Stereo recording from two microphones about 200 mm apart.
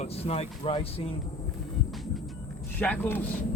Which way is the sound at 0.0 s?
30° left (ahead or behind).